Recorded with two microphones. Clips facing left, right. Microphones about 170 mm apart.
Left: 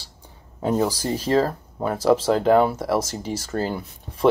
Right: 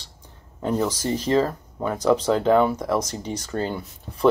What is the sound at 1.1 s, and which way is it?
Speech, 10° left (ahead or behind).